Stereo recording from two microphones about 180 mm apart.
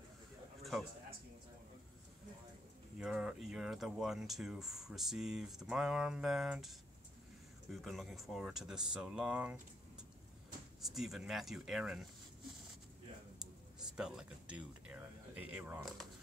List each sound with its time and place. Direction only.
3.0 s speech: 5° right (ahead or behind)
7.7 s speech: centre (ahead or behind)
13.7 s a sound: 5° right (ahead or behind)